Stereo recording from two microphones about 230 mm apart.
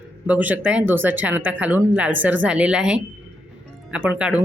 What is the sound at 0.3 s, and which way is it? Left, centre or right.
A woman's voice, centre.